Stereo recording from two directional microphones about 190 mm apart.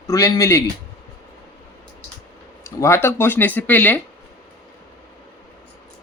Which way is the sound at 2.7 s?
15° left (ahead or behind).